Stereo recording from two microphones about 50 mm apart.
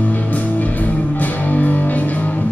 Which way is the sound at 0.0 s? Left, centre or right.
Left.